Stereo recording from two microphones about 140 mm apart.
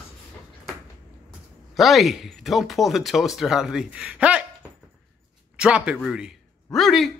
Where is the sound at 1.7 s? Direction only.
Centre (ahead or behind).